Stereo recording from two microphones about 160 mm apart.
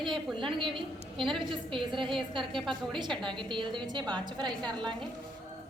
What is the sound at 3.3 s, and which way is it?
A woman's voice, 30° right (ahead or behind).